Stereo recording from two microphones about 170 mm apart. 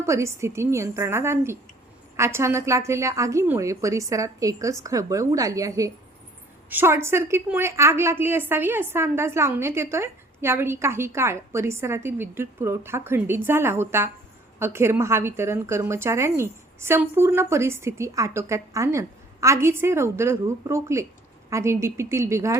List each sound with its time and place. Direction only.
0.0 s a woman's voice: 15° right (ahead or behind)